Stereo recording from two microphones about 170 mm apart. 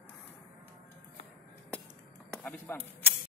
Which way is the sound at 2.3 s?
5° left (ahead or behind).